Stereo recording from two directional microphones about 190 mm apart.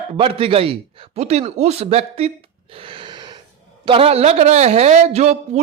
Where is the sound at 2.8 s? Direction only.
25° right (ahead or behind).